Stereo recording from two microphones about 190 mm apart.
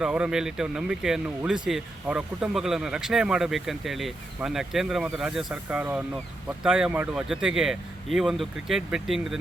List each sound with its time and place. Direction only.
0.0 s speech: 5° right (ahead or behind)